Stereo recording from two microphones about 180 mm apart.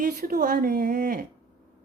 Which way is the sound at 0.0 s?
50° right (ahead or behind).